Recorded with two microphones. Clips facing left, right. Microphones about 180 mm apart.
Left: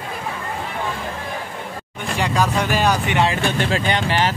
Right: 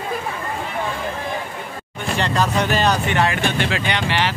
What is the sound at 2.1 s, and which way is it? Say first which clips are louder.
Speech: even; 10° left (ahead or behind).